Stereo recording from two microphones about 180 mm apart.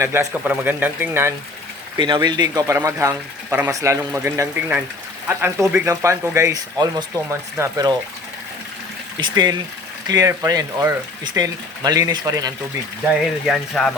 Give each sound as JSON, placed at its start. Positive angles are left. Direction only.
{"t": 0.0, "sound": "speech", "side_deg": -15}
{"t": 2.0, "sound": "speech", "side_deg": -25}
{"t": 9.2, "sound": "speech", "side_deg": -20}
{"t": 13.5, "sound": "speech", "side_deg": 0}